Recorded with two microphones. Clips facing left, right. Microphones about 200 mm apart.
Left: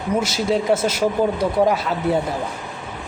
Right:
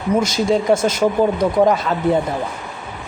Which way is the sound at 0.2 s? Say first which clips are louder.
Right 2 dB; 5° left (ahead or behind).